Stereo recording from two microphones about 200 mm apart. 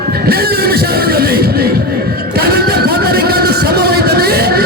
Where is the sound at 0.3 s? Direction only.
50° right (ahead or behind).